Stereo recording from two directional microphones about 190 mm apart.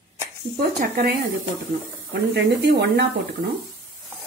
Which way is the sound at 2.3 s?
55° right (ahead or behind).